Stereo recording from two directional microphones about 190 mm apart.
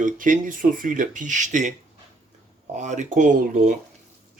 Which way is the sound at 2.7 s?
40° right (ahead or behind).